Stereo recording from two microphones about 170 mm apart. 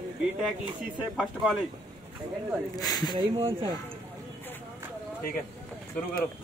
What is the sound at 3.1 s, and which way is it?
Speech, 30° right (ahead or behind).